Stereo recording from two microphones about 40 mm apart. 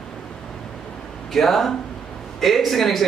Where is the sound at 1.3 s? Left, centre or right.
Centre.